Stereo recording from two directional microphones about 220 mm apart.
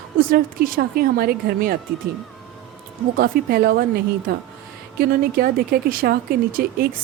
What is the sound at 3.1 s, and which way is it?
Speech, 45° right (ahead or behind).